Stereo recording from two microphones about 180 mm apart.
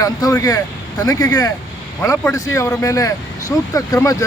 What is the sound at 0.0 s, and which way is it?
Speech, 20° left (ahead or behind).